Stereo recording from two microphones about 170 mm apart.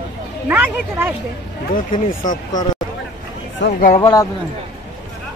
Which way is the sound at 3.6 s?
60° left (ahead or behind).